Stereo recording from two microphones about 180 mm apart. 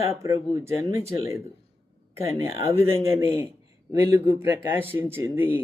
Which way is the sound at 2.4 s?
15° right (ahead or behind).